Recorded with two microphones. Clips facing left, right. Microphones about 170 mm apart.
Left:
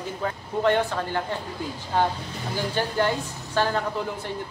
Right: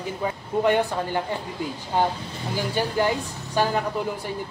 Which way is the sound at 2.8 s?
10° right (ahead or behind).